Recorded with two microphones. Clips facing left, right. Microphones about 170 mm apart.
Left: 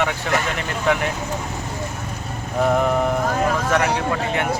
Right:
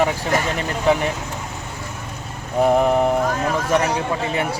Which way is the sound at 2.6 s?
30° right (ahead or behind).